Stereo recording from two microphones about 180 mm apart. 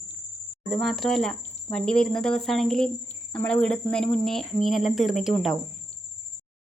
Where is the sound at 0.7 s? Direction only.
Centre (ahead or behind).